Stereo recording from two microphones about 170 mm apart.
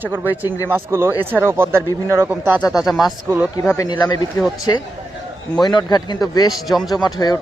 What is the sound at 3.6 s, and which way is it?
Speech, 20° left (ahead or behind).